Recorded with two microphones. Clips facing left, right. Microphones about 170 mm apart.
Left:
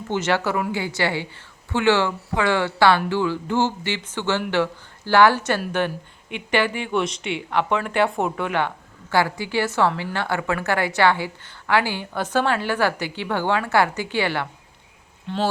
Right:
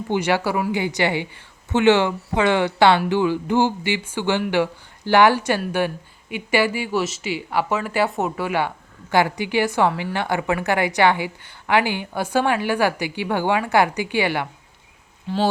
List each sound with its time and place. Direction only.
0.1 s a woman's voice: 10° right (ahead or behind)
9.1 s a woman's voice: 20° right (ahead or behind)
15.3 s speech: 5° right (ahead or behind)